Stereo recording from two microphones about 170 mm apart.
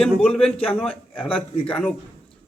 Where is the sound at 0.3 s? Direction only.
35° left (ahead or behind).